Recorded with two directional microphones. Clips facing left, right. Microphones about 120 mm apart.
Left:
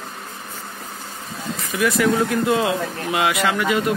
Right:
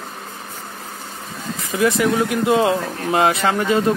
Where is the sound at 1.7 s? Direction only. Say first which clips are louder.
Right 1 dB; 25° right (ahead or behind).